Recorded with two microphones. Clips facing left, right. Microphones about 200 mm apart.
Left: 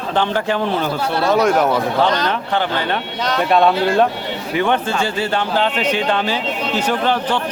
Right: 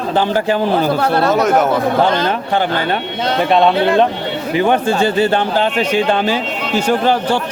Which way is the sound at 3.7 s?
60° right (ahead or behind).